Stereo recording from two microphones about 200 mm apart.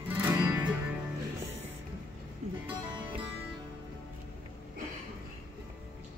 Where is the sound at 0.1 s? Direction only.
15° right (ahead or behind).